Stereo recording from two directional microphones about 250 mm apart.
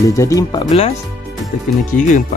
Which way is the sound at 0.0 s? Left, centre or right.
Centre.